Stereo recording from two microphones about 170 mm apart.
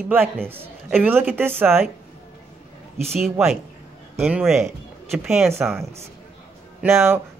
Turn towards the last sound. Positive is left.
turn(degrees=-15)  # may be behind; listen again after turning